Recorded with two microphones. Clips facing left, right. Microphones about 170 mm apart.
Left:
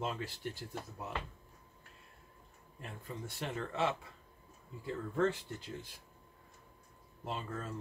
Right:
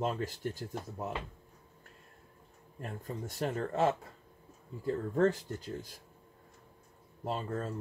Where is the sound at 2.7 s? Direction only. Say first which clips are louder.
Right 5 dB; 45° right (ahead or behind).